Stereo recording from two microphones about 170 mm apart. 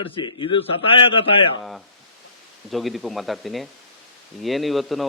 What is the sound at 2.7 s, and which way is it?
Speech, centre (ahead or behind).